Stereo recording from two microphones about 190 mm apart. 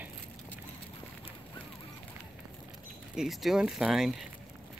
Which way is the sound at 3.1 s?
Centre (ahead or behind).